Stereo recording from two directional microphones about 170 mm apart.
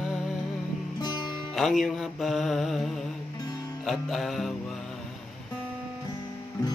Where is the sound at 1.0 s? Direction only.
25° left (ahead or behind).